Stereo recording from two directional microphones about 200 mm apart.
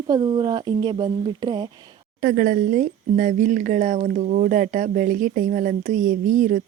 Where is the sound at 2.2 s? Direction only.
50° right (ahead or behind).